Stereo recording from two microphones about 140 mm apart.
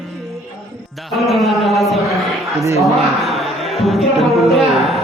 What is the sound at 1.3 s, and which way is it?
A man's voice, centre (ahead or behind).